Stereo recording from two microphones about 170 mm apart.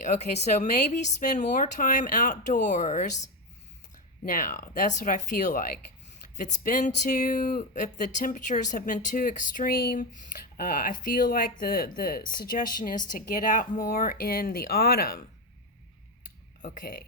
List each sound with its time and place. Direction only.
0.0 s speech: 40° left (ahead or behind); by 15.2 s 60° left (ahead or behind)
16.6 s speech: 55° left (ahead or behind)